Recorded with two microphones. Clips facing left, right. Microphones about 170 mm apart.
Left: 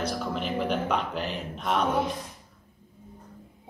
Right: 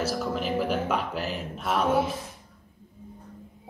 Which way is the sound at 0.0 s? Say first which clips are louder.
Right 2 dB; 5° right (ahead or behind).